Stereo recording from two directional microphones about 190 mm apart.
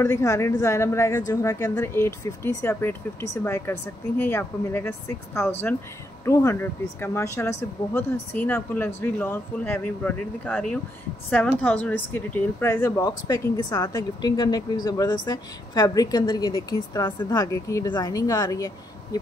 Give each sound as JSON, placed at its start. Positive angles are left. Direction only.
{"t": 0.0, "sound": "a woman's voice", "side_deg": 15}
{"t": 6.2, "sound": "a woman's voice", "side_deg": 15}